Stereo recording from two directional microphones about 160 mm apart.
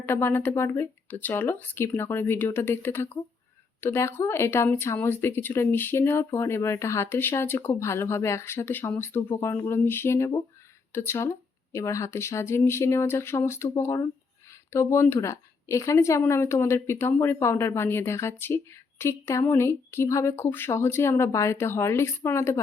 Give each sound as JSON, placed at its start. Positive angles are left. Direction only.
{"t": 0.0, "sound": "speech", "side_deg": 15}